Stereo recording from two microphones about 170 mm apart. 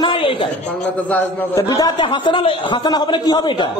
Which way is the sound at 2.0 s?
30° left (ahead or behind).